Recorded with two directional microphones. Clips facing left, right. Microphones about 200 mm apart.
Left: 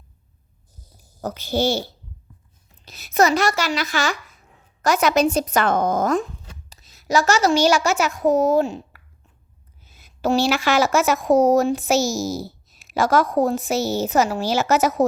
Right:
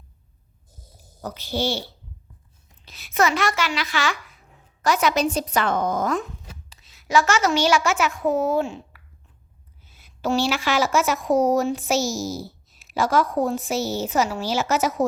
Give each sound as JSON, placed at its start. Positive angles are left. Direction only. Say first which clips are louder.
{"t": 1.2, "sound": "speech", "louder": "left 4 dB", "side_deg": 45}
{"t": 2.8, "sound": "a child's voice", "louder": "left 4 dB", "side_deg": 40}
{"t": 9.8, "sound": "a sound", "louder": "left 3 dB", "side_deg": 45}
{"t": 11.3, "sound": "a child's voice", "louder": "left 4 dB", "side_deg": 40}
{"t": 12.4, "sound": "a sound", "louder": "left 3 dB", "side_deg": 75}
{"t": 13.3, "sound": "speech", "louder": "left 3 dB", "side_deg": 40}
{"t": 13.6, "sound": "a woman's voice", "louder": "left 3 dB", "side_deg": 70}
{"t": 13.9, "sound": "speech", "louder": "left 3 dB", "side_deg": 45}